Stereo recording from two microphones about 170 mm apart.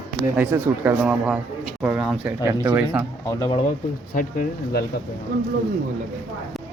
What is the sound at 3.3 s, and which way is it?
Speech, 20° left (ahead or behind).